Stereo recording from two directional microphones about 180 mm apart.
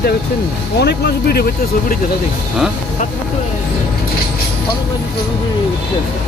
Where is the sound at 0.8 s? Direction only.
65° left (ahead or behind).